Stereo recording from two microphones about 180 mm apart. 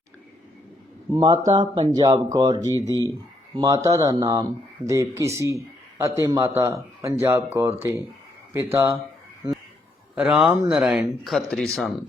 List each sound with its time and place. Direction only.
1.2 s a man's voice: 25° right (ahead or behind)
10.2 s speech: 5° right (ahead or behind)